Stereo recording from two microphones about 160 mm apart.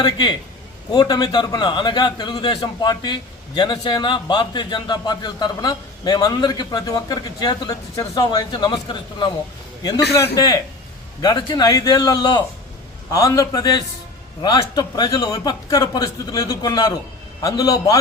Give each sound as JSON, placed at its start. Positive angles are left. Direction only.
{"t": 0.0, "sound": "a man's voice", "side_deg": 25}